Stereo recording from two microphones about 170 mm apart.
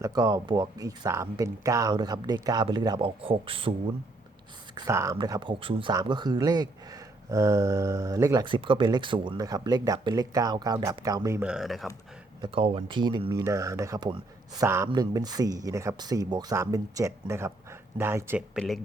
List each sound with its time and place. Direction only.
0.0 s speech: 20° right (ahead or behind)
4.7 s speech: 20° right (ahead or behind)
11.4 s speech: 5° right (ahead or behind)
12.4 s speech: 35° right (ahead or behind); by 18.4 s 15° right (ahead or behind)
18.5 s speech: centre (ahead or behind)